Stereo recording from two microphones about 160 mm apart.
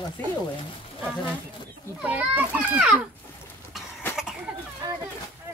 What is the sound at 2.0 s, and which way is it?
A child's voice, 10° right (ahead or behind).